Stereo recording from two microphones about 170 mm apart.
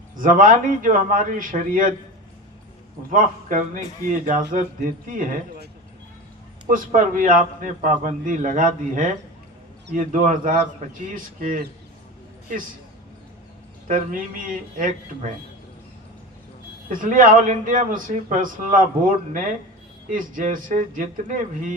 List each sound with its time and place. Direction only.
0.2 s a man's voice: 50° right (ahead or behind)
3.1 s a man's voice: 50° right (ahead or behind)
6.7 s a man's voice: 50° right (ahead or behind)
13.8 s a man's voice: 50° right (ahead or behind)
16.9 s a man's voice: 50° right (ahead or behind)